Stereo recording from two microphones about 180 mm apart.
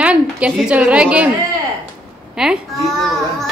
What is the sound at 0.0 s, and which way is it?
A woman's voice, 5° right (ahead or behind).